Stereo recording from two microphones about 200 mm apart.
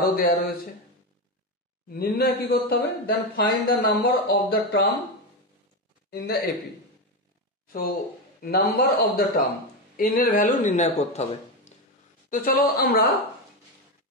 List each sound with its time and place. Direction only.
0.0 s speech: 45° left (ahead or behind)
1.9 s speech: 50° left (ahead or behind)
6.0 s a man's voice: 50° left (ahead or behind)
7.7 s speech: 45° left (ahead or behind)
12.3 s speech: 45° left (ahead or behind)